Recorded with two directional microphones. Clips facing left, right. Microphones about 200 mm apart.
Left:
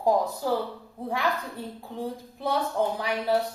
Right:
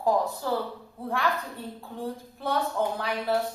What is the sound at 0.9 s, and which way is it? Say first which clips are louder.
A woman's voice: even; 15° left (ahead or behind).